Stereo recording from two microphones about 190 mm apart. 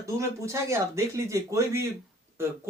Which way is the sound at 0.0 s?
15° right (ahead or behind).